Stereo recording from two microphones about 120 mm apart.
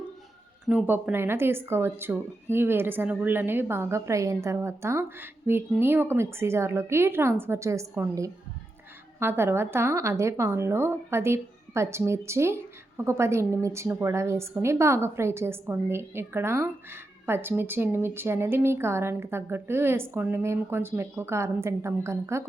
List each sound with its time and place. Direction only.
0.7 s speech: 10° right (ahead or behind)